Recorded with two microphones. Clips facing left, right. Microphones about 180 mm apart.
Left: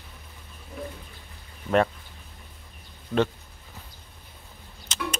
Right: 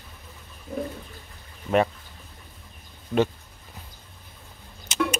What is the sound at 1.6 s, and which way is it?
Speech, 5° right (ahead or behind).